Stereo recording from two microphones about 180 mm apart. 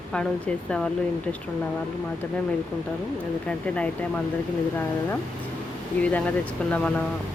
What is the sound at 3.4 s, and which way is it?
Speech, 5° left (ahead or behind).